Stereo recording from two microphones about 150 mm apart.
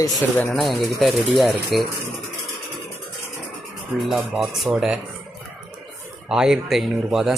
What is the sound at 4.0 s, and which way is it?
Speech, centre (ahead or behind).